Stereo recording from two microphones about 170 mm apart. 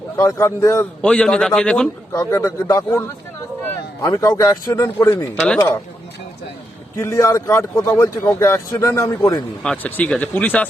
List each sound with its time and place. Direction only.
0.2 s speech: 20° left (ahead or behind)
2.1 s speech: 15° left (ahead or behind)
4.0 s speech: 20° left (ahead or behind)
7.0 s speech: 15° left (ahead or behind)
9.6 s speech: 5° left (ahead or behind)